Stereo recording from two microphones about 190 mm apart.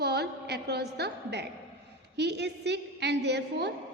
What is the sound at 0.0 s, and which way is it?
A woman's voice, 60° right (ahead or behind).